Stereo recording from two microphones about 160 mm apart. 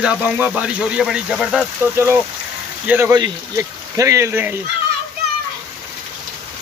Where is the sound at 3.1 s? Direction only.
25° right (ahead or behind).